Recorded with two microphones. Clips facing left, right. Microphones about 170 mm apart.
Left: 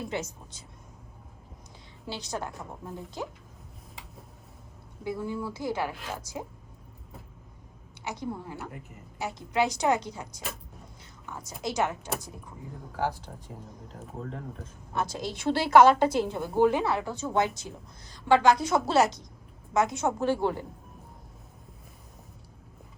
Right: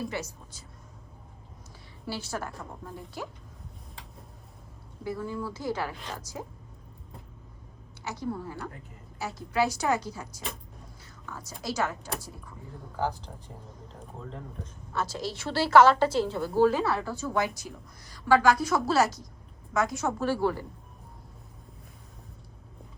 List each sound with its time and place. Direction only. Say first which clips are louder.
0.1 s a woman's voice: left 2 dB; 20° left (ahead or behind)
2.0 s a woman's voice: even; 20° left (ahead or behind)
5.0 s a woman's voice: left 1 dB; 15° left (ahead or behind)
8.0 s a woman's voice: right 1 dB; 15° left (ahead or behind)
14.9 s a woman's voice: left 1 dB; 15° left (ahead or behind)